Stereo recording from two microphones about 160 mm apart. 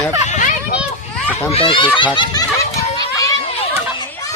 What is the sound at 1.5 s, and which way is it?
Speech, 30° left (ahead or behind).